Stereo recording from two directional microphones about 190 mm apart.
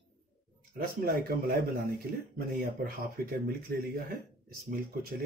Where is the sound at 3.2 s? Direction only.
50° right (ahead or behind).